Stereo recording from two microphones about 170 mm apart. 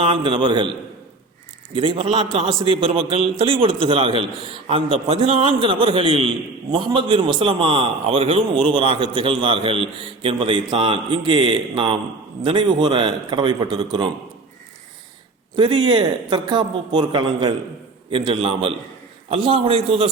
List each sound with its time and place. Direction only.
0.0 s a man's voice: 30° right (ahead or behind)
1.7 s a man's voice: 35° right (ahead or behind)
15.5 s a man's voice: 25° right (ahead or behind)